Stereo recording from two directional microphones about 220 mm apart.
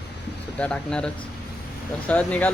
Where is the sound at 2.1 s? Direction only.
5° left (ahead or behind).